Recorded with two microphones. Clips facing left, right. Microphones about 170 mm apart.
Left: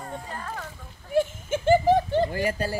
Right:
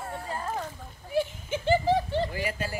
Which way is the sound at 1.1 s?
50° left (ahead or behind).